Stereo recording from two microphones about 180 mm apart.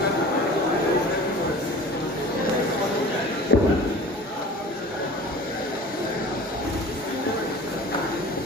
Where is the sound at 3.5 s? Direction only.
90° left.